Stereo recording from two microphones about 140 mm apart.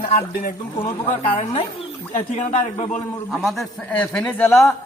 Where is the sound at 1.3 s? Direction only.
45° left (ahead or behind).